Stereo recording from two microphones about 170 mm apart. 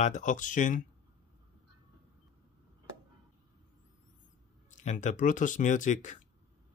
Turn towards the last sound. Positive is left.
turn(degrees=45)  # may be behind; listen again after turning